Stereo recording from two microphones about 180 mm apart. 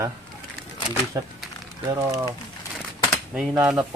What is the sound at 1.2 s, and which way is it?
Speech, 20° right (ahead or behind).